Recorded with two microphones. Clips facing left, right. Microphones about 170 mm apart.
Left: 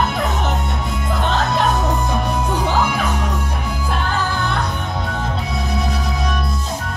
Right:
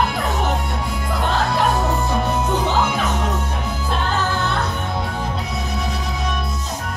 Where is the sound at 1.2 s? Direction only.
20° left (ahead or behind).